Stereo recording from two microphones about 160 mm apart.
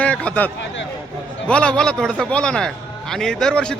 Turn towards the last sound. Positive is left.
turn(degrees=5)  # may be behind; listen again after turning